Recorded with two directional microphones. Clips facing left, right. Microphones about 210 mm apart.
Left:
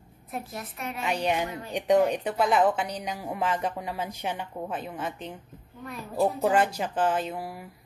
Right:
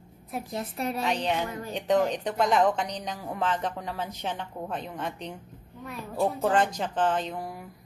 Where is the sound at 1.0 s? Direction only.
10° left (ahead or behind).